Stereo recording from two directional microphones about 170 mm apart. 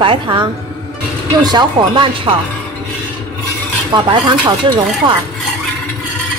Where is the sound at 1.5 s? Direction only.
25° right (ahead or behind).